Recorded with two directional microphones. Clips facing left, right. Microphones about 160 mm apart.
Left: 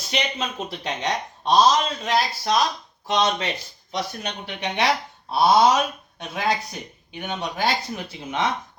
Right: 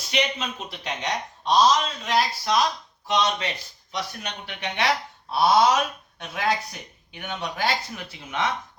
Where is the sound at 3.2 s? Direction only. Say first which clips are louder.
Left 3 dB; 30° left (ahead or behind).